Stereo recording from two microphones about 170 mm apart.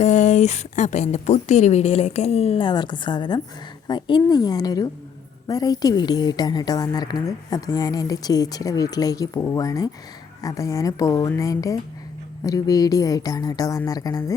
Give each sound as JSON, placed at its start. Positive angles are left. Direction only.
{"t": 0.0, "sound": "a woman's voice", "side_deg": 45}